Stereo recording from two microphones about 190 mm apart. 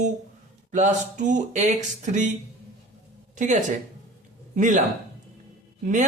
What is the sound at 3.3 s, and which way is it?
Speech, 40° right (ahead or behind).